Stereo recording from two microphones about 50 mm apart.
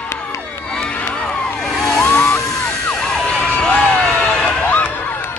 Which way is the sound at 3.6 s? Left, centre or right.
Left.